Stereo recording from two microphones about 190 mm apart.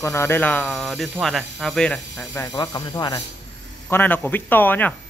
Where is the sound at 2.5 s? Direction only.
20° left (ahead or behind).